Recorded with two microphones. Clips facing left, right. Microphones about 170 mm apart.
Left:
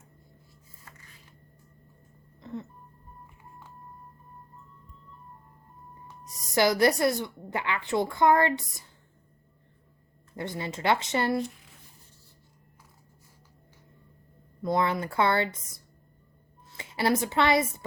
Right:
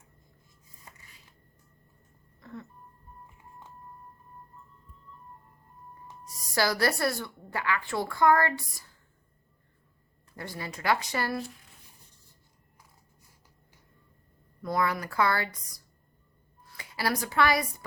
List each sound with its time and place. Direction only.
0.9 s a sound: 20° right (ahead or behind)
2.4 s music: 20° left (ahead or behind)
6.2 s a woman's voice: 20° left (ahead or behind)
10.3 s a woman's voice: 20° left (ahead or behind)
14.6 s a woman's voice: 25° left (ahead or behind)